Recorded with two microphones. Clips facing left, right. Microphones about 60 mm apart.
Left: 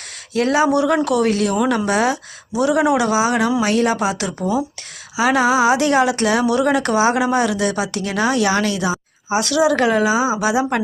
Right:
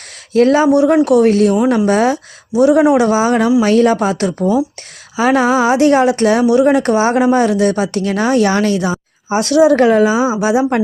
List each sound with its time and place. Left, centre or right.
0.5 s speech: right
10.2 s a woman's voice: centre